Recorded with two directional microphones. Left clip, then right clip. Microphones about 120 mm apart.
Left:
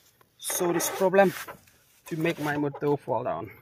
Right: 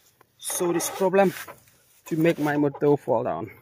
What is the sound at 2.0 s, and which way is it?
Speech, 45° right (ahead or behind).